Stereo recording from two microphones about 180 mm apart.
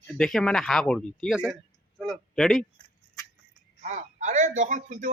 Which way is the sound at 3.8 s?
40° right (ahead or behind).